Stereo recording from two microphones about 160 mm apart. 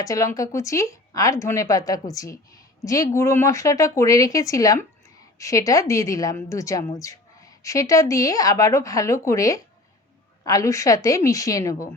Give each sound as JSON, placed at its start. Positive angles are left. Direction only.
{"t": 0.0, "sound": "a woman's voice", "side_deg": 20}